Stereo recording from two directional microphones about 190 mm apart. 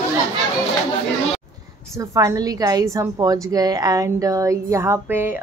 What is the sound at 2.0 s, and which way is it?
A woman's voice, 20° right (ahead or behind).